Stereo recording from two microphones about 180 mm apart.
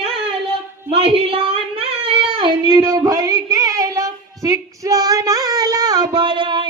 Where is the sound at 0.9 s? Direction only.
30° right (ahead or behind).